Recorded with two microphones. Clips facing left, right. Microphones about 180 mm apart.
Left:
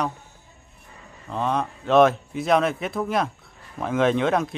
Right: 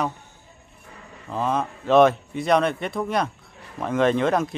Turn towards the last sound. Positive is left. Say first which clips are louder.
# right 1 dB
turn(degrees=0)  # may be behind; listen again after turning